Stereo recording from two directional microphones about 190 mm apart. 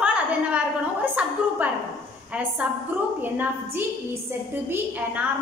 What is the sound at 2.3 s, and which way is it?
A woman's voice, 5° right (ahead or behind).